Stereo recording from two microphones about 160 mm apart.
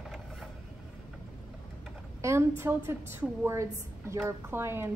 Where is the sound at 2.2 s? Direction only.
15° right (ahead or behind).